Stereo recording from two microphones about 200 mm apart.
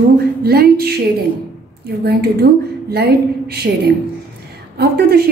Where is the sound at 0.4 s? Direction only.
50° right (ahead or behind).